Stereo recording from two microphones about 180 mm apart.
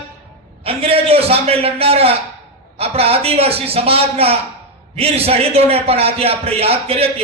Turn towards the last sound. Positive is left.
turn(degrees=-35)  # may be behind; listen again after turning